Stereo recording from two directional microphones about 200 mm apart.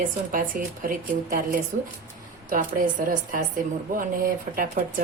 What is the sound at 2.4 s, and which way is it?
A woman's voice, 40° right (ahead or behind).